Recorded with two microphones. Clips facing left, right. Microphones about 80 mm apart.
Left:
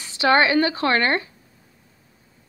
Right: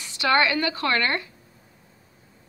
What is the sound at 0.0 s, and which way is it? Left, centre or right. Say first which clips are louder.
A woman's voice: left 4 dB; left.